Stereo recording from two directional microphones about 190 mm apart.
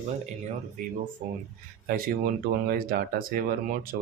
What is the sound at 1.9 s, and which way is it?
Speech, 50° right (ahead or behind).